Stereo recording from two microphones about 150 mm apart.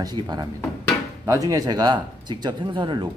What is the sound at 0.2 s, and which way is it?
Speech, 35° right (ahead or behind).